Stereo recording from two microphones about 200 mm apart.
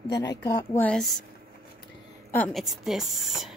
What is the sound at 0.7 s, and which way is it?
Speech, 5° left (ahead or behind).